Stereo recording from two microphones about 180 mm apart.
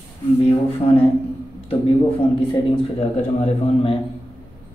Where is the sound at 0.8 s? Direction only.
35° left (ahead or behind).